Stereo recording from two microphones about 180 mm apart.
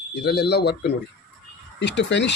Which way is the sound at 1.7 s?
75° left (ahead or behind).